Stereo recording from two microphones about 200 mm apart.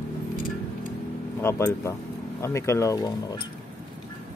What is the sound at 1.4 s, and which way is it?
Speech, 15° left (ahead or behind).